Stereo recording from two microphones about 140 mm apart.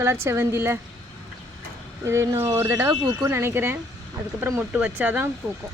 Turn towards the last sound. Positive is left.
turn(degrees=-10)  # may be behind; listen again after turning